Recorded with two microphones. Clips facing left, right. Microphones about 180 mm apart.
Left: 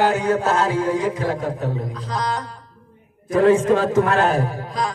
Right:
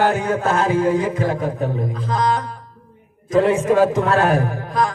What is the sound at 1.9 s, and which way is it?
Music, 50° right (ahead or behind).